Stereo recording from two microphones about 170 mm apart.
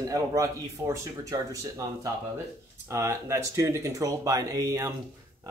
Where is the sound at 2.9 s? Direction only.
15° right (ahead or behind).